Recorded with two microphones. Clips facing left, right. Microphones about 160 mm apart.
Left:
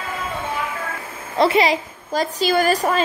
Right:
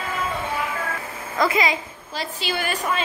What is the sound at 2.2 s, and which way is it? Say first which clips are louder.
Speech: left 9 dB; 40° left (ahead or behind).